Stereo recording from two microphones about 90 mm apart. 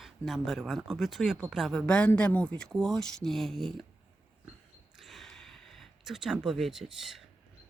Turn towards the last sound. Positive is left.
turn(degrees=-5)  # may be behind; listen again after turning